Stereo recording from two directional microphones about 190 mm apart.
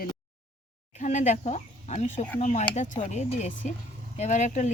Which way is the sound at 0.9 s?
40° left (ahead or behind).